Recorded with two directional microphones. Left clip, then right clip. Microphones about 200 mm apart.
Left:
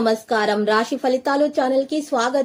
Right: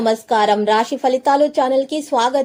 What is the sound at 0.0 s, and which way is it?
A woman's voice, 15° right (ahead or behind).